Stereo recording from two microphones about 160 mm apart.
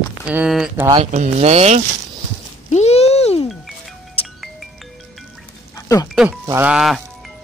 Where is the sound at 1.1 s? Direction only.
45° right (ahead or behind).